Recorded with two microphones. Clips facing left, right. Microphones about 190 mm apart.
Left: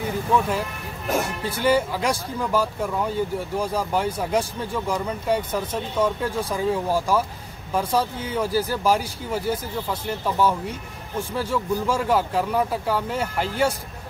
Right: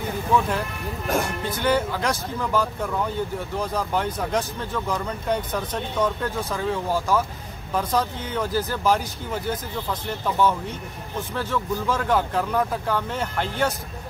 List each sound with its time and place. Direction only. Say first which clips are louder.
0.5 s speech: even; 5° left (ahead or behind)